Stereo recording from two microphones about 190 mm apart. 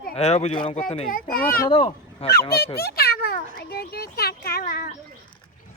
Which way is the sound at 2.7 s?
55° left (ahead or behind).